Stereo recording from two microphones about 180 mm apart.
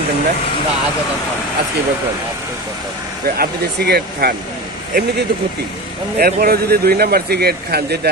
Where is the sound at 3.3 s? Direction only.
60° right (ahead or behind).